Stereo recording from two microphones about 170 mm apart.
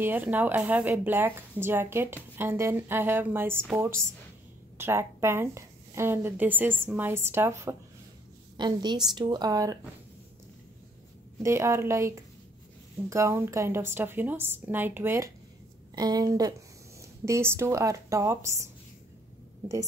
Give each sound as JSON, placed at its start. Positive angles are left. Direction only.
{"t": 0.0, "sound": "a woman's voice", "side_deg": -10}
{"t": 8.5, "sound": "a woman's voice", "side_deg": -25}
{"t": 11.4, "sound": "a woman's voice", "side_deg": -15}
{"t": 13.1, "sound": "a woman's voice", "side_deg": -15}